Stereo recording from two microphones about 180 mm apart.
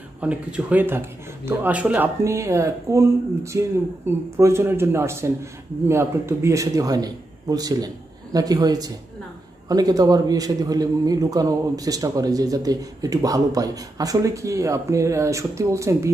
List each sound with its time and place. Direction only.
0.2 s a man's voice: 10° right (ahead or behind)